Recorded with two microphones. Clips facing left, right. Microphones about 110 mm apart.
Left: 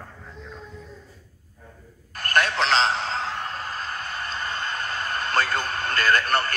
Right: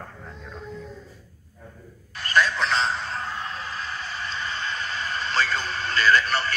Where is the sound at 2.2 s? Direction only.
60° left (ahead or behind); by 3.3 s 90° left.